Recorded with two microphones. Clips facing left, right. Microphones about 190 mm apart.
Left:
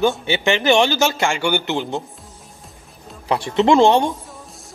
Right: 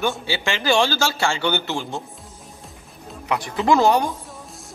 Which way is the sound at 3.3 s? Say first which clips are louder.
Left 4 dB; 25° left (ahead or behind).